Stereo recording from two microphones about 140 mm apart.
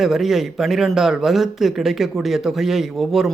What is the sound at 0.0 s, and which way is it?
Speech, centre (ahead or behind).